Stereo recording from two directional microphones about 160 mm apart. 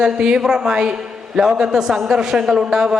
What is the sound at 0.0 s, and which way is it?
A man's voice, 5° right (ahead or behind).